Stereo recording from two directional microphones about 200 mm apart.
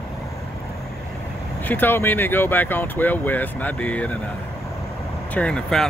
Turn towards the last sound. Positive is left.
turn(degrees=5)  # may be behind; listen again after turning